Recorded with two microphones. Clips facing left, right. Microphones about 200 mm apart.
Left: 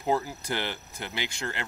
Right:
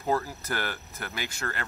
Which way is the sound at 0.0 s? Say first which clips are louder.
Left 1 dB; 15° left (ahead or behind).